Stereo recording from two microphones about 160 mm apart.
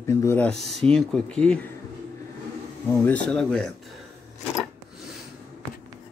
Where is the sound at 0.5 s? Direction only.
Centre (ahead or behind).